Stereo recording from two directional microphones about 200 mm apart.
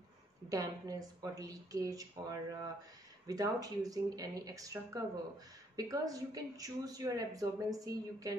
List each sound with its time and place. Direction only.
0.5 s a woman's voice: 15° right (ahead or behind)